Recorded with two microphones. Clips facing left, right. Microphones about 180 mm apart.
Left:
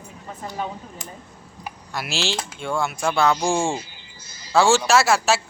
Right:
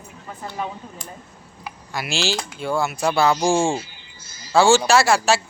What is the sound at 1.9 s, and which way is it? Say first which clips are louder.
Speech: right 2 dB; centre (ahead or behind).